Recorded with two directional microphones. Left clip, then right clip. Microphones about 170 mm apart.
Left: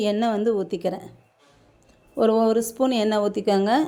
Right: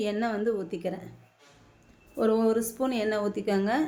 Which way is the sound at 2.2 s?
40° left (ahead or behind).